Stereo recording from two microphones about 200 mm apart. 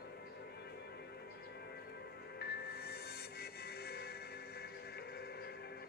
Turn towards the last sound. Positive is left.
turn(degrees=55)  # may be behind; listen again after turning